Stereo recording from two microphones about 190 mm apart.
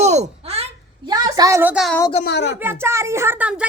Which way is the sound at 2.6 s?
10° right (ahead or behind).